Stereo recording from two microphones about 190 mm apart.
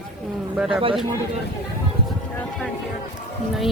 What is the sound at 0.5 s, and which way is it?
Speech, 5° right (ahead or behind).